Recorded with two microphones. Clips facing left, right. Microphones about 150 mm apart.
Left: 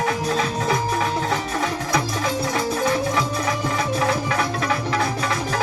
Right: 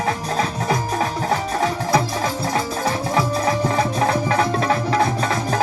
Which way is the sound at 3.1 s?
35° right (ahead or behind).